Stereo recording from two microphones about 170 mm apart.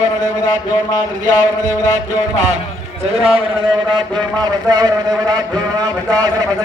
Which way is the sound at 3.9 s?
25° right (ahead or behind).